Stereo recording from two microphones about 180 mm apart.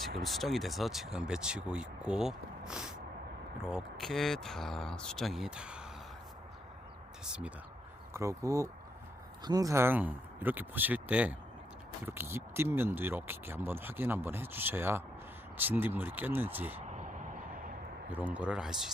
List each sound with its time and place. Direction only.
0.0 s speech: centre (ahead or behind)
8.1 s speech: 15° right (ahead or behind)
18.1 s speech: 10° right (ahead or behind)